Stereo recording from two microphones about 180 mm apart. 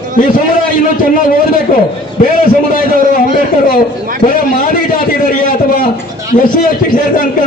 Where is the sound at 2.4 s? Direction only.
50° left (ahead or behind).